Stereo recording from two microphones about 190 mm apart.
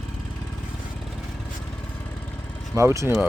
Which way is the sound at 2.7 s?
15° right (ahead or behind).